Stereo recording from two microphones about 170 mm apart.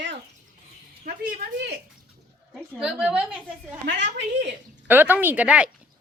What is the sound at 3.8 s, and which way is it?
Speech, 90° right.